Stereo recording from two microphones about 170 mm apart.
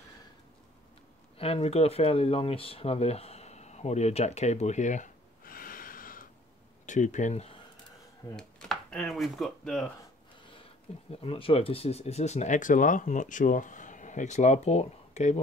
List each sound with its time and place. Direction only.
1.4 s speech: 35° left (ahead or behind)
8.4 s speech: 5° left (ahead or behind)
10.5 s speech: 35° left (ahead or behind)